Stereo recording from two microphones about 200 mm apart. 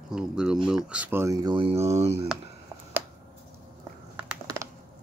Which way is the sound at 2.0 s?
30° right (ahead or behind).